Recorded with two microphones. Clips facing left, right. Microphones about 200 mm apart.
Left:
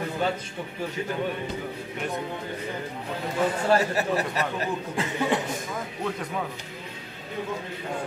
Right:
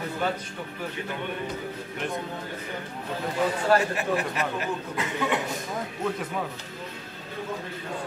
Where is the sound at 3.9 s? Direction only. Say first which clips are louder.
Left 1 dB; 35° left (ahead or behind).